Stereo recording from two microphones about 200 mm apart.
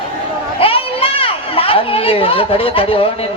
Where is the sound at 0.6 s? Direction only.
25° left (ahead or behind).